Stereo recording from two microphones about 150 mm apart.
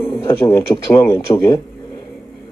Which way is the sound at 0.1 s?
30° left (ahead or behind).